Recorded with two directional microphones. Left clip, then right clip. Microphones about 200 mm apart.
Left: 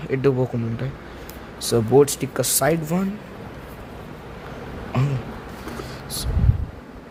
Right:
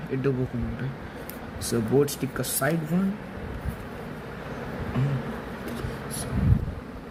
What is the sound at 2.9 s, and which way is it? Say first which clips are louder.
Speech: left 4 dB; 60° left (ahead or behind).